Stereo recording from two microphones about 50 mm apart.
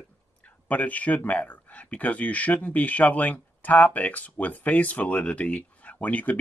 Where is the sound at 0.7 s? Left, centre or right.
Left.